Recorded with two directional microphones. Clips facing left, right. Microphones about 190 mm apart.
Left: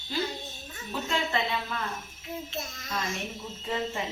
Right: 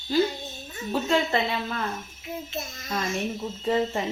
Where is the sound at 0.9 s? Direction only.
35° right (ahead or behind).